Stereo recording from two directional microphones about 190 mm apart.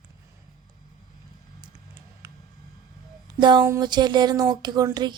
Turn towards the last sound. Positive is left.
turn(degrees=-20)  # may be behind; listen again after turning